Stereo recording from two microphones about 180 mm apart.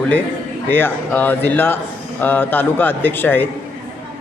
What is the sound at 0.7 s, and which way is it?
A man's voice, 10° left (ahead or behind).